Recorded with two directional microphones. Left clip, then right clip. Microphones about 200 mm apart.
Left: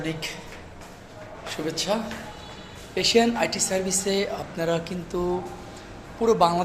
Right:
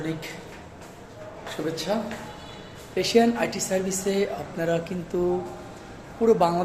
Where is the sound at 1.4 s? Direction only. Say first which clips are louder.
Left 1 dB; 10° right (ahead or behind).